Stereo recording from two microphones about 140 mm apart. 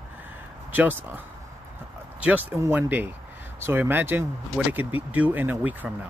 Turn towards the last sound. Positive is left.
turn(degrees=-10)  # may be behind; listen again after turning